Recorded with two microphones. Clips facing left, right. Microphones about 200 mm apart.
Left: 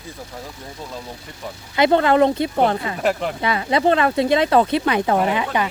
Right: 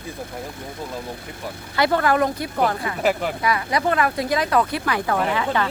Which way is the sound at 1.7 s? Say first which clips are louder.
Left 4 dB; 20° left (ahead or behind).